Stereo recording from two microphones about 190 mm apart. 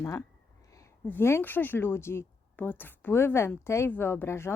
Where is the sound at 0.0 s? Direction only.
15° left (ahead or behind).